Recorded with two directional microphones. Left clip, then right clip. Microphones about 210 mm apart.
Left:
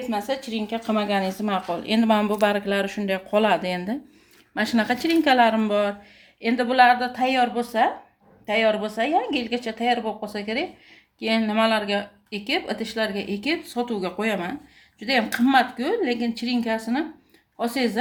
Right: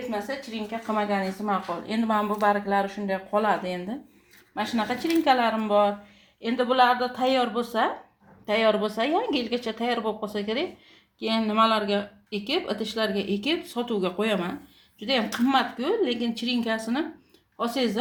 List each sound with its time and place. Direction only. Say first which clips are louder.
0.1 s speech: left 5 dB; 40° left (ahead or behind)
6.7 s a woman's voice: left 4 dB; 15° left (ahead or behind)